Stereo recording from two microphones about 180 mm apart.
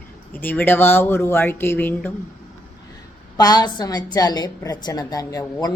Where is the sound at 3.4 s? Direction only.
20° left (ahead or behind).